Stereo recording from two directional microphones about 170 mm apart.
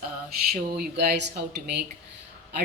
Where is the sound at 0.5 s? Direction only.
70° right (ahead or behind).